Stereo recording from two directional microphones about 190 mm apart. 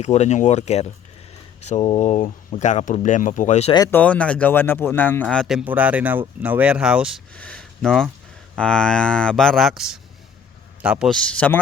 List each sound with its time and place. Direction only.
0.0 s speech: 35° left (ahead or behind)
3.8 s speech: 10° left (ahead or behind)
7.3 s speech: 5° left (ahead or behind)